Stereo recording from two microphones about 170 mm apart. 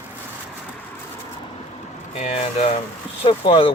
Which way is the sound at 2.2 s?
40° left (ahead or behind).